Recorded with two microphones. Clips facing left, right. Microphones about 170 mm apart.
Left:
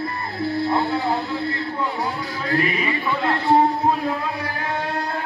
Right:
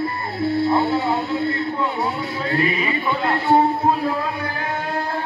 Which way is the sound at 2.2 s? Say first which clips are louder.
Left 1 dB; 25° right (ahead or behind).